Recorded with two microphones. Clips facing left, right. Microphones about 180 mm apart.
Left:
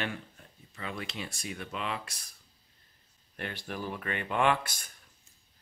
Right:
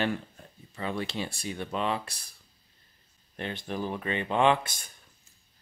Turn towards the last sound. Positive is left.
turn(degrees=-25)  # may be behind; listen again after turning